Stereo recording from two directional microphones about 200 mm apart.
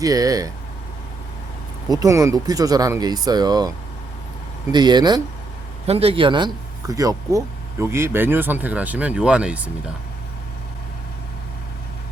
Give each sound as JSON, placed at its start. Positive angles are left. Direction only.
{"t": 0.0, "sound": "speech", "side_deg": -15}
{"t": 1.9, "sound": "speech", "side_deg": -15}
{"t": 4.7, "sound": "speech", "side_deg": -20}